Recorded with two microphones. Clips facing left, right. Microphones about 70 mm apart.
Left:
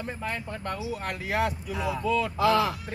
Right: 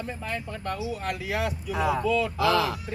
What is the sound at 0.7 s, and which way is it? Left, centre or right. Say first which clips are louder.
Speech: right 2 dB; left.